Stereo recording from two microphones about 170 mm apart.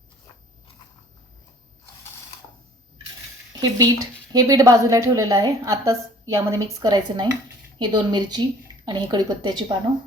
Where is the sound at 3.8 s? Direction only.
20° right (ahead or behind).